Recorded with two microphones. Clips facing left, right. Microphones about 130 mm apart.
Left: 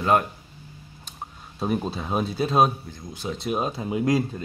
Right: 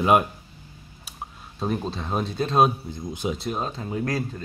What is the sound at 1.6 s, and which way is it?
Speech, 10° left (ahead or behind).